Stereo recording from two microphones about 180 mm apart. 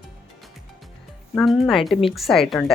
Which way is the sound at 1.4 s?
Centre (ahead or behind).